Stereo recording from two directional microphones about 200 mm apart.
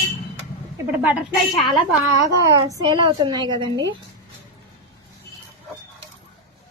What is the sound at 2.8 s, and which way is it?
A woman's voice, 25° right (ahead or behind).